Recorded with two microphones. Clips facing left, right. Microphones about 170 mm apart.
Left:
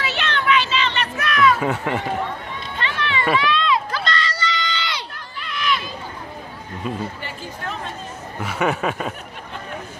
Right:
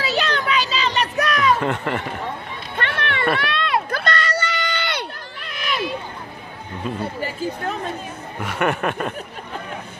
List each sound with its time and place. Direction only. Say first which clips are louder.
0.0 s a sound: right 2 dB; 35° right (ahead or behind)
1.6 s speech: even; centre (ahead or behind)
2.7 s run: right 1 dB; 65° right (ahead or behind)
3.3 s a sound: left 3 dB; 60° right (ahead or behind); by 5.8 s 45° right (ahead or behind)
7.2 s speech: right 7 dB; 40° right (ahead or behind)
8.4 s speech: even; centre (ahead or behind)